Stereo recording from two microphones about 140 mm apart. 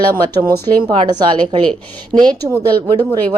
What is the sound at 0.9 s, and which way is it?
A woman's voice, 35° right (ahead or behind).